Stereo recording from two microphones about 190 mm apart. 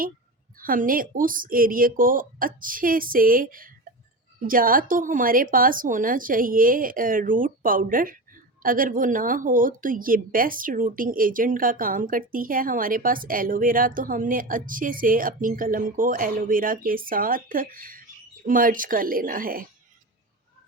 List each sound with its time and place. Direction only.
0.6 s a woman's voice: 45° right (ahead or behind)